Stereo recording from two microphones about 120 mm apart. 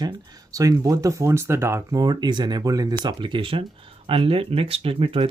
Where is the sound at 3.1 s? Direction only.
40° right (ahead or behind).